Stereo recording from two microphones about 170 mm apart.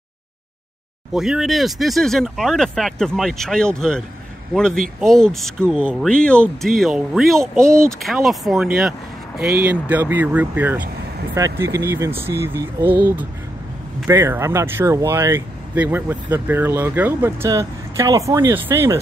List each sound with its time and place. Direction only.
1.1 s speech: centre (ahead or behind)
7.6 s speech: 15° right (ahead or behind)
8.0 s speech: centre (ahead or behind)